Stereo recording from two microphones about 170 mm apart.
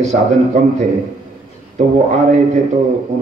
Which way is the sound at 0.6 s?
45° right (ahead or behind).